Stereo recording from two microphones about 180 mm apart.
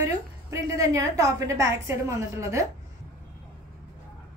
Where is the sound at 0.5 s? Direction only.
20° right (ahead or behind).